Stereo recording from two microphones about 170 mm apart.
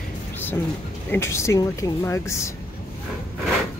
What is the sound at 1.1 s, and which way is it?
Speech, 15° left (ahead or behind).